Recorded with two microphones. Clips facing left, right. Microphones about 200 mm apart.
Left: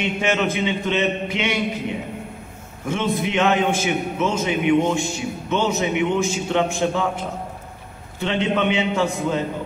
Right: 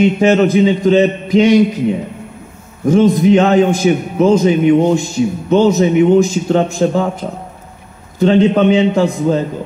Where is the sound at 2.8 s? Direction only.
40° right (ahead or behind).